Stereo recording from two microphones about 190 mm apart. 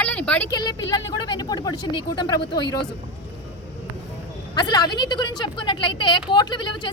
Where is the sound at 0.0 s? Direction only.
5° left (ahead or behind).